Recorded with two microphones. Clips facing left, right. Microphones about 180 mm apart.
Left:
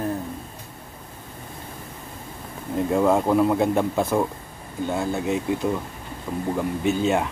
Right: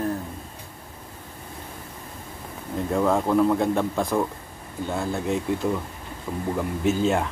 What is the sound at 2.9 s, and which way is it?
Speech, 10° left (ahead or behind).